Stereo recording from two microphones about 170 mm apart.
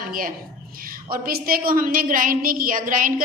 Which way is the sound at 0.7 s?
55° right (ahead or behind).